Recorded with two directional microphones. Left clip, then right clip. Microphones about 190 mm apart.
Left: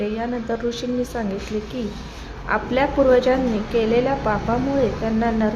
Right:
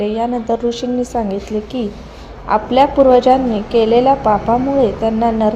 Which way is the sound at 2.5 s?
20° right (ahead or behind).